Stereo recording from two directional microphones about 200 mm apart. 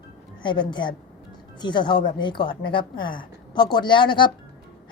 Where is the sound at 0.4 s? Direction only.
25° left (ahead or behind).